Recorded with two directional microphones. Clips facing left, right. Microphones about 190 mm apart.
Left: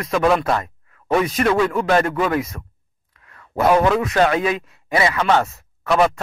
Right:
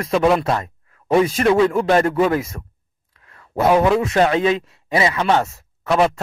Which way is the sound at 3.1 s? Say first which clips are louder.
Left 1 dB; 30° right (ahead or behind).